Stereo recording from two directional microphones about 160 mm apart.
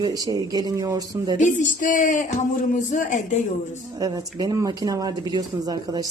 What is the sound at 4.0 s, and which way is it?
Speech, 25° right (ahead or behind).